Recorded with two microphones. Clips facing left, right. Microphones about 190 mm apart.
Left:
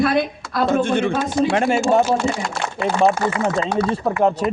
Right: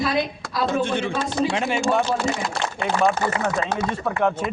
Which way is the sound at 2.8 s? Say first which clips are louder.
Left 4 dB; 30° left (ahead or behind).